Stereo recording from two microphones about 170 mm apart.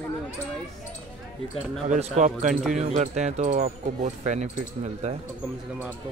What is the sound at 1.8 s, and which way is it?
Speech, 45° right (ahead or behind).